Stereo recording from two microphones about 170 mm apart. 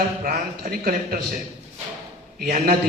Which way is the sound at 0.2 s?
55° right (ahead or behind).